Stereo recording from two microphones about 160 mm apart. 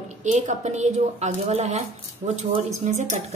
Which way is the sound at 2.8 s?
45° right (ahead or behind).